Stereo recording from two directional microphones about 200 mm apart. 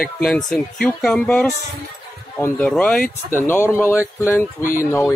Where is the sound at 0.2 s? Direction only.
Centre (ahead or behind).